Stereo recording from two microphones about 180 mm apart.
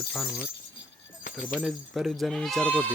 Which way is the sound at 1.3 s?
5° right (ahead or behind).